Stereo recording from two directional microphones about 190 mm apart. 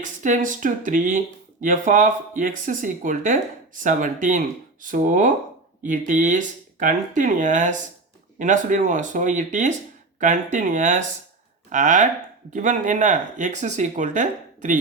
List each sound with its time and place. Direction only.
0.0 s speech: 40° right (ahead or behind)